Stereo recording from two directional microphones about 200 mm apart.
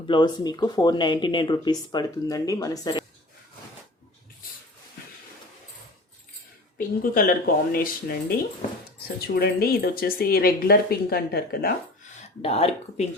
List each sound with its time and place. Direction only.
0.1 s speech: 20° left (ahead or behind)
6.7 s speech: 45° left (ahead or behind)
9.2 s speech: 55° left (ahead or behind)
12.4 s speech: 30° left (ahead or behind)